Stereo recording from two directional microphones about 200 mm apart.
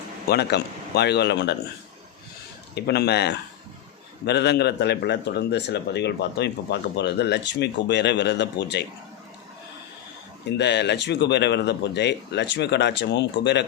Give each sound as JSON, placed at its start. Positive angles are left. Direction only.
{"t": 0.3, "sound": "a man's voice", "side_deg": 55}
{"t": 2.7, "sound": "a man's voice", "side_deg": 55}
{"t": 10.6, "sound": "a man's voice", "side_deg": 60}